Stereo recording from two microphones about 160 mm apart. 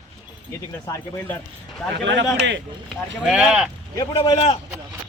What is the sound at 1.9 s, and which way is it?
Speech, 90° right.